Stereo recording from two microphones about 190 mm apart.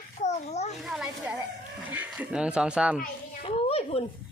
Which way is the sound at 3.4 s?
30° left (ahead or behind).